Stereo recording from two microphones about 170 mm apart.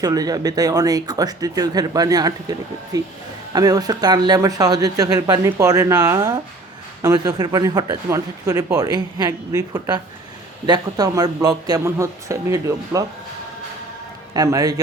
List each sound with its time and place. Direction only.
0.0 s speech: 20° right (ahead or behind)
14.3 s speech: 20° right (ahead or behind)